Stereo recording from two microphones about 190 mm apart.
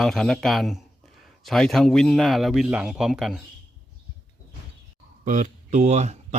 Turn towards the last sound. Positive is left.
turn(degrees=-35)  # may be behind; listen again after turning